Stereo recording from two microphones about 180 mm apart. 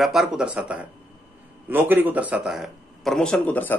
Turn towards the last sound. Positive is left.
turn(degrees=10)  # may be behind; listen again after turning